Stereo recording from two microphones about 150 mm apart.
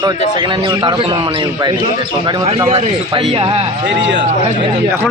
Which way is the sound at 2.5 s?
40° right (ahead or behind).